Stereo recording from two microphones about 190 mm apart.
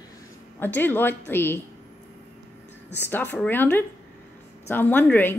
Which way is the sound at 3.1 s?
10° left (ahead or behind).